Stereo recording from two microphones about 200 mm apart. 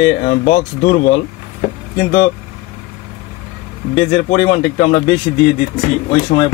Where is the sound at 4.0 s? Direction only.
35° left (ahead or behind).